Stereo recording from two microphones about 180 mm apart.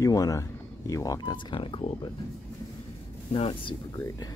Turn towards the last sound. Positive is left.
turn(degrees=30)  # may be behind; listen again after turning